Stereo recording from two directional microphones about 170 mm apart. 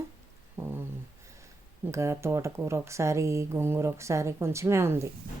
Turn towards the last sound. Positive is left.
turn(degrees=-15)  # may be behind; listen again after turning